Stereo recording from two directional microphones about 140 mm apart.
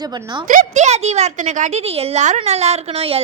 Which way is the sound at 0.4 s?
70° right (ahead or behind).